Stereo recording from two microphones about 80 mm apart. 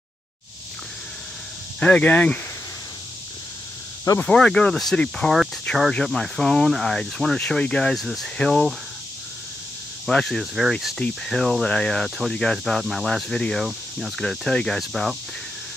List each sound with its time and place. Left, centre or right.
1.8 s speech: centre
4.2 s speech: centre
10.0 s speech: centre
11.0 s speech: centre
13.7 s cricket: centre
14.2 s speech: centre